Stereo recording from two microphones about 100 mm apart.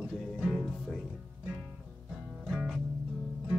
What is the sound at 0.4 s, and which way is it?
Music, centre (ahead or behind).